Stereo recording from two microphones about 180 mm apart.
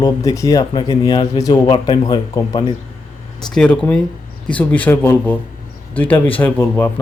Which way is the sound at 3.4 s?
5° left (ahead or behind).